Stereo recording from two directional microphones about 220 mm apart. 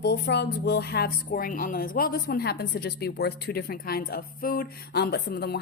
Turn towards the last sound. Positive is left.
turn(degrees=45)  # may be behind; listen again after turning